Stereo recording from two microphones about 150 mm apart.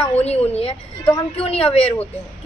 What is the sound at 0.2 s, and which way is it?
A woman's voice, 45° left (ahead or behind).